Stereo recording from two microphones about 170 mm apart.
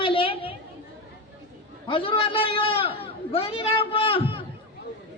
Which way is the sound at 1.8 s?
30° left (ahead or behind).